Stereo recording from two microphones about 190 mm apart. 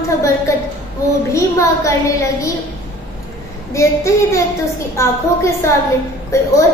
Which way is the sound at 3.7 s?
15° left (ahead or behind).